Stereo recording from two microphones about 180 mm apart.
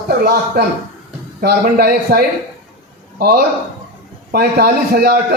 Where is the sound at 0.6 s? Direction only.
60° right (ahead or behind).